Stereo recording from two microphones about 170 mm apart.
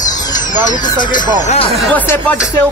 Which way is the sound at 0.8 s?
25° left (ahead or behind).